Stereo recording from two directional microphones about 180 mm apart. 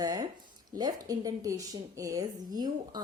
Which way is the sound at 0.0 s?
20° right (ahead or behind).